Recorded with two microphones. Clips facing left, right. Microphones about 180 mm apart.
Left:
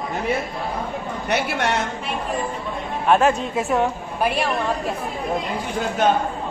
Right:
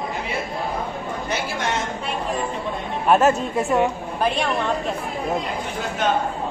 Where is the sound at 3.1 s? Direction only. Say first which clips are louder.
Right 1 dB; centre (ahead or behind).